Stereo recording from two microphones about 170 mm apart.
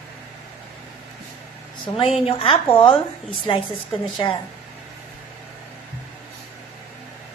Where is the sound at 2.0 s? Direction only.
35° left (ahead or behind).